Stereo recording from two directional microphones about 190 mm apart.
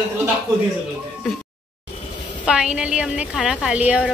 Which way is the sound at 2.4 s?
5° right (ahead or behind).